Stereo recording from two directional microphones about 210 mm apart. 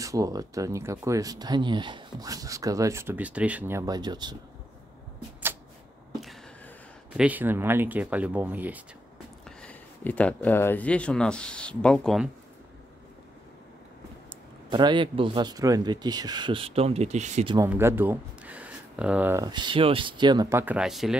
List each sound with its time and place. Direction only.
0.0 s speech: 15° right (ahead or behind)
7.2 s speech: 10° right (ahead or behind)
9.6 s speech: 5° left (ahead or behind)
14.7 s speech: 20° right (ahead or behind)
17.6 s speech: 10° right (ahead or behind)